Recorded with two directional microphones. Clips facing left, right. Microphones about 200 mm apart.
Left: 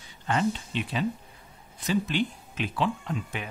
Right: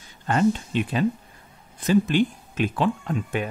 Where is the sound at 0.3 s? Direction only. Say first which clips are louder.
Right 6 dB; 45° right (ahead or behind).